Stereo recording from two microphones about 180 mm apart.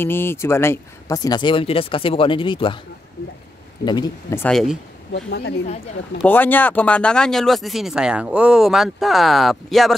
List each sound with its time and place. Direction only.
0.0 s speech: 10° left (ahead or behind)
3.8 s speech: 25° left (ahead or behind)
4.4 s speech: 5° left (ahead or behind)
5.1 s a woman's voice: 65° left (ahead or behind)
6.2 s speech: 10° left (ahead or behind)